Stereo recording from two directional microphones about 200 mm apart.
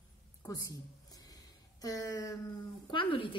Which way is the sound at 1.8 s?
20° left (ahead or behind).